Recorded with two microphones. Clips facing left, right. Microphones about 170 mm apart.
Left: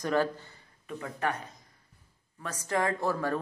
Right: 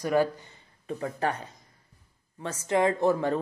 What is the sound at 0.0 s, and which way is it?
Speech, 10° right (ahead or behind).